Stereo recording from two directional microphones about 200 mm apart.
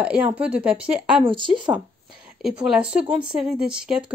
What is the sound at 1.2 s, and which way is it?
Speech, 25° right (ahead or behind).